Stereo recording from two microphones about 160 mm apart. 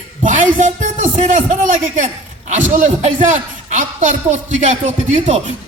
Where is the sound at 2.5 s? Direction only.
55° right (ahead or behind).